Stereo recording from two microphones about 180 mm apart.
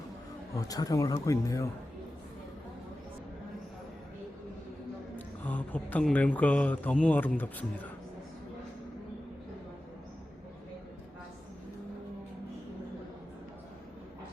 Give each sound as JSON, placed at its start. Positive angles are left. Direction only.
{"t": 0.5, "sound": "speech", "side_deg": 20}
{"t": 5.1, "sound": "speech", "side_deg": 10}